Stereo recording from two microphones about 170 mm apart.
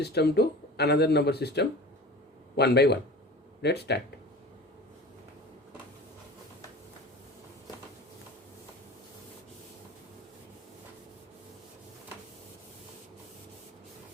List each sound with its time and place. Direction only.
0.0 s speech: 75° left (ahead or behind)